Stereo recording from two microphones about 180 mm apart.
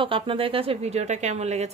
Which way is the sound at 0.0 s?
30° right (ahead or behind).